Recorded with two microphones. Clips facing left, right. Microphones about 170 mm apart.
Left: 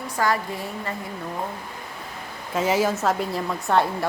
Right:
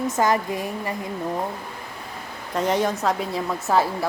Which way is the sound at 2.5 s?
5° left (ahead or behind).